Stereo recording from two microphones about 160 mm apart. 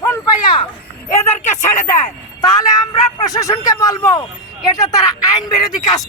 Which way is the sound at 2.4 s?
25° left (ahead or behind).